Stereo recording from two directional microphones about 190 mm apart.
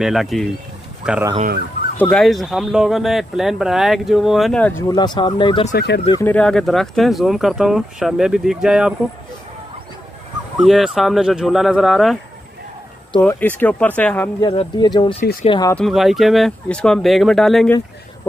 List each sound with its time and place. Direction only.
0.0 s speech: centre (ahead or behind)
4.8 s speech: 20° left (ahead or behind)
5.8 s speech: 55° left (ahead or behind)
6.1 s speech: 10° left (ahead or behind)
10.6 s speech: centre (ahead or behind)
13.2 s speech: 10° left (ahead or behind)
14.4 s speech: 25° left (ahead or behind)
15.7 s speech: centre (ahead or behind)